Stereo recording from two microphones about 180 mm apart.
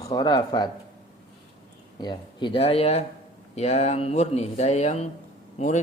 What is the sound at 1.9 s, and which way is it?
Speech, 25° left (ahead or behind).